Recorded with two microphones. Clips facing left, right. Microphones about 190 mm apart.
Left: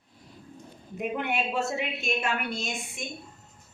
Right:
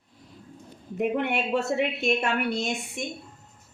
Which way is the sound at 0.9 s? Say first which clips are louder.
Right 4 dB; 60° right (ahead or behind).